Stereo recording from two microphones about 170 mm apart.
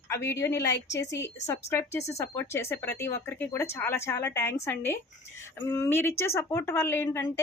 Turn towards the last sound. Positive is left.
turn(degrees=20)  # may be behind; listen again after turning